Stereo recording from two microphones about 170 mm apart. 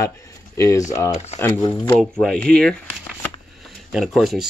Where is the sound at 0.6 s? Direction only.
20° left (ahead or behind).